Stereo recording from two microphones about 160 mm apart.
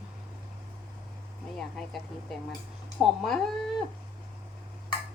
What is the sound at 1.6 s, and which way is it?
Speech, 5° left (ahead or behind).